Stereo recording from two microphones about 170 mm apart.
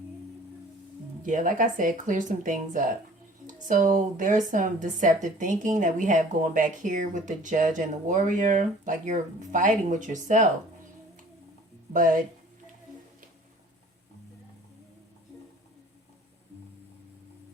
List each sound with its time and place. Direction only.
1.2 s a woman's voice: 50° right (ahead or behind)
11.9 s a woman's voice: 50° right (ahead or behind)